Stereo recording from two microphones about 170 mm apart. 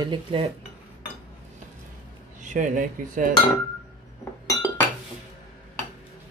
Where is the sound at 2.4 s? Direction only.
50° right (ahead or behind).